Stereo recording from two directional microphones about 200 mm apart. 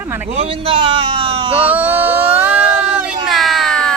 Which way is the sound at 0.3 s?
30° right (ahead or behind).